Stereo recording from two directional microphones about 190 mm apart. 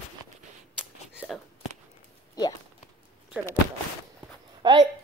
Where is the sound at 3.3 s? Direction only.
5° right (ahead or behind).